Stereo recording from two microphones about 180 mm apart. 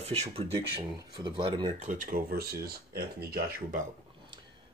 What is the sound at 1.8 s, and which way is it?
Speech, 45° right (ahead or behind).